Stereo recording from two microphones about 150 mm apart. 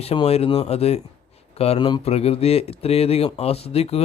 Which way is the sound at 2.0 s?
40° left (ahead or behind).